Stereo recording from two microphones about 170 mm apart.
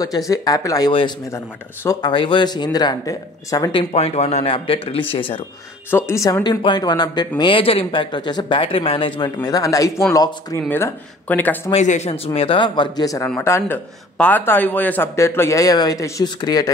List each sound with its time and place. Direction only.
0.3 s speech: 20° left (ahead or behind)
3.9 s speech: 40° left (ahead or behind)
5.9 s speech: 15° left (ahead or behind)
11.7 s speech: 40° left (ahead or behind)
12.4 s speech: 30° left (ahead or behind)